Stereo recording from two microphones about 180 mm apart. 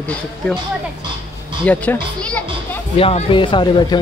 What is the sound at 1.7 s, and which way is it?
Speech, 10° left (ahead or behind).